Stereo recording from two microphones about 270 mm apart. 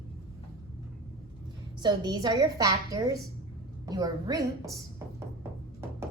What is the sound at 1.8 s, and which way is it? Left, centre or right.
A woman's voice, centre.